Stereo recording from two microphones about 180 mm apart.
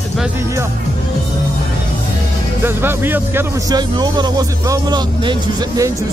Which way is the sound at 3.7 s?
20° right (ahead or behind).